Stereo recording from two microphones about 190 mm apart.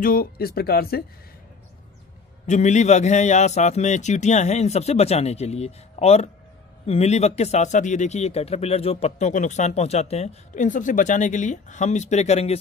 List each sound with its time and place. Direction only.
0.0 s speech: 50° left (ahead or behind)
2.4 s speech: 40° left (ahead or behind)